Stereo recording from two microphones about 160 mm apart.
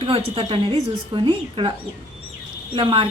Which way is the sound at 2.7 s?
30° right (ahead or behind).